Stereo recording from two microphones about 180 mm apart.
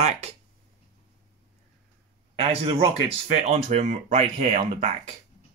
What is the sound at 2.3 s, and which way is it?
Speech, 30° right (ahead or behind).